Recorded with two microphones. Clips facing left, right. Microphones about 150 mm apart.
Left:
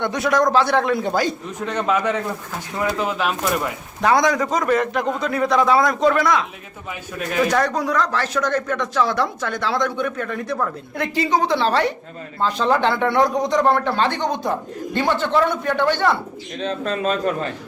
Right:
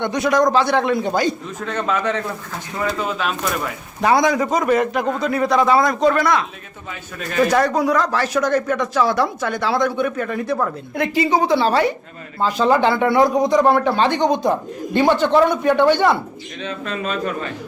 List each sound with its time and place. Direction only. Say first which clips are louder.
0.0 s a man's voice: right 2 dB; centre (ahead or behind)
1.5 s a man's voice: left 1 dB; 15° left (ahead or behind)
4.0 s a man's voice: right 1 dB; 5° right (ahead or behind)
7.4 s speech: right 4 dB; 5° right (ahead or behind)
16.6 s speech: left 4 dB; 35° left (ahead or behind)